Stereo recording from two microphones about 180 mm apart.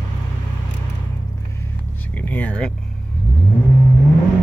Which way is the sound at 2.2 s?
10° left (ahead or behind).